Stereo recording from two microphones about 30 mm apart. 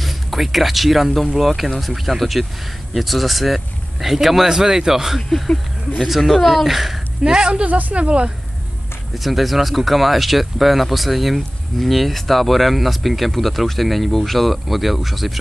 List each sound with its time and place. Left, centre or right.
0.0 s a man's voice: centre
7.2 s speech: right
7.6 s speech: right
8.0 s speech: right
9.1 s speech: centre